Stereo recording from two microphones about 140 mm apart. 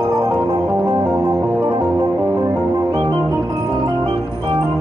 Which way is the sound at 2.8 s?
25° right (ahead or behind).